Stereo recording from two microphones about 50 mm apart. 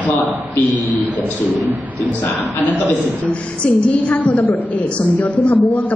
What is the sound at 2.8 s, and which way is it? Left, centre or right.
A woman's voice, left.